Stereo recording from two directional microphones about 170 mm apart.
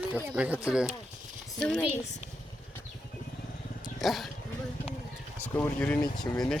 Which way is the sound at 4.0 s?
Centre (ahead or behind).